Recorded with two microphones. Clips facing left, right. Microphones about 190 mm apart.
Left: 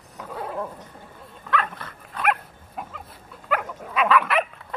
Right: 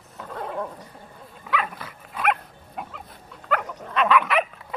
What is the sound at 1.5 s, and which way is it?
Dog, 5° right (ahead or behind).